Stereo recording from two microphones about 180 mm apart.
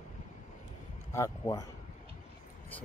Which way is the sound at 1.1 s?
15° left (ahead or behind).